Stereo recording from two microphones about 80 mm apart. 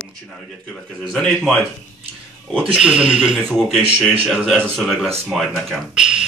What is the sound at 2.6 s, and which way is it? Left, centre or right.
Speech, centre.